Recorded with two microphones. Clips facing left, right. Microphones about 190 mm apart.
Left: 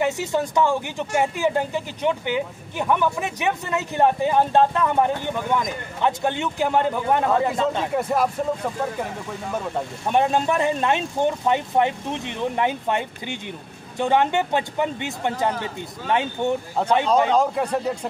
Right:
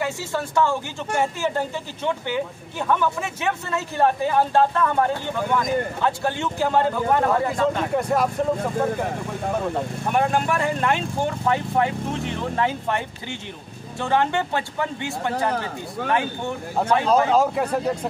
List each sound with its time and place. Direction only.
0.0 s speech: 20° left (ahead or behind)
7.9 s speech: 5° left (ahead or behind)
10.1 s speech: 20° left (ahead or behind)
17.3 s speech: 5° right (ahead or behind)